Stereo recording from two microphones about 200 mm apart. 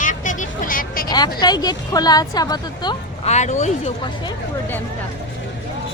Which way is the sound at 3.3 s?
35° left (ahead or behind).